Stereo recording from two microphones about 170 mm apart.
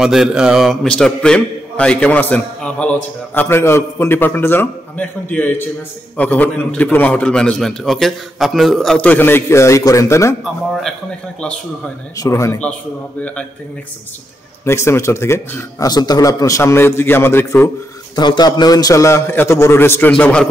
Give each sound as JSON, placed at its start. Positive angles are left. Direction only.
{"t": 0.0, "sound": "a man's voice", "side_deg": -5}
{"t": 10.4, "sound": "a man's voice", "side_deg": 0}
{"t": 12.2, "sound": "a man's voice", "side_deg": 15}
{"t": 14.6, "sound": "a man's voice", "side_deg": 15}
{"t": 18.1, "sound": "a man's voice", "side_deg": 25}